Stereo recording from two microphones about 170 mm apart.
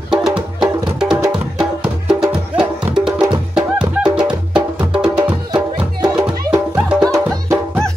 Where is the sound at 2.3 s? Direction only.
5° right (ahead or behind).